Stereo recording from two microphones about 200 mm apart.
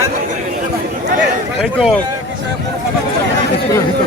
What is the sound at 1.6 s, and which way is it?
Speech, centre (ahead or behind).